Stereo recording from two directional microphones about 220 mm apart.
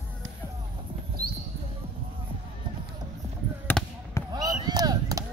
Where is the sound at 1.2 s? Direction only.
40° right (ahead or behind).